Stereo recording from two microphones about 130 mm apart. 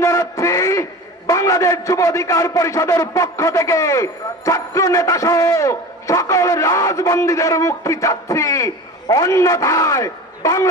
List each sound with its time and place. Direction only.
0.0 s a man's voice: 25° left (ahead or behind)